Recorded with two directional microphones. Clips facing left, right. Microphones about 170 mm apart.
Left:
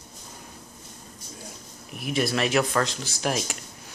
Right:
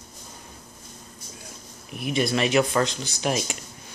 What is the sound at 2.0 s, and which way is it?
Speech, centre (ahead or behind).